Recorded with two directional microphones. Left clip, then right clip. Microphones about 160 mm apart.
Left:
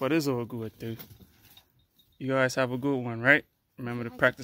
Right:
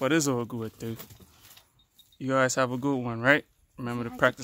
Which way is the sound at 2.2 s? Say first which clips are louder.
Right 1 dB; 10° right (ahead or behind).